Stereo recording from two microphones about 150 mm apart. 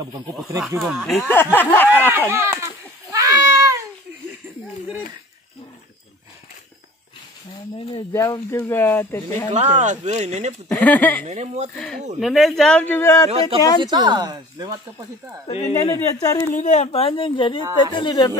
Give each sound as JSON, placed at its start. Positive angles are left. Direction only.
{"t": 0.6, "sound": "speech", "side_deg": 0}
{"t": 1.2, "sound": "speech", "side_deg": 15}
{"t": 2.0, "sound": "a sound", "side_deg": -15}
{"t": 8.1, "sound": "speech", "side_deg": 20}
{"t": 9.5, "sound": "speech", "side_deg": -50}
{"t": 10.7, "sound": "speech", "side_deg": 10}
{"t": 11.2, "sound": "speech", "side_deg": -50}
{"t": 11.7, "sound": "speech", "side_deg": 0}
{"t": 13.3, "sound": "speech", "side_deg": -40}
{"t": 13.8, "sound": "speech", "side_deg": -30}
{"t": 15.5, "sound": "speech", "side_deg": 45}
{"t": 15.9, "sound": "speech", "side_deg": 20}
{"t": 16.5, "sound": "a woman's voice", "side_deg": 50}